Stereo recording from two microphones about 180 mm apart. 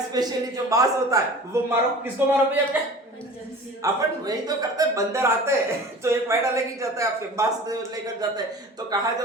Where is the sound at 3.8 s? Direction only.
20° right (ahead or behind).